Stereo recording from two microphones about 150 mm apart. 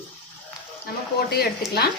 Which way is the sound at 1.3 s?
90° left.